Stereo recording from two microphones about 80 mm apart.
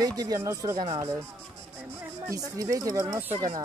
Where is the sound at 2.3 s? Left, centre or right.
Right.